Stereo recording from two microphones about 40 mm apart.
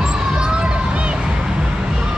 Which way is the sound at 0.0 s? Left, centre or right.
Centre.